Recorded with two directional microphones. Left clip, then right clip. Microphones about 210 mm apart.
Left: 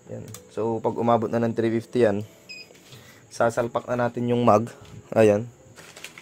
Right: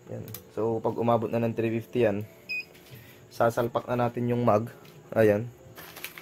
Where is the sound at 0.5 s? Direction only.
30° left (ahead or behind).